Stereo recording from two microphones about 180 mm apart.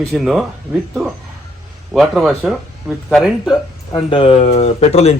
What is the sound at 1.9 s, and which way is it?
Speech, 5° right (ahead or behind).